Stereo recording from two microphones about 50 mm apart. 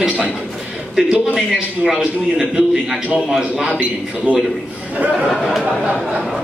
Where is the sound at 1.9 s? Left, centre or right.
Centre.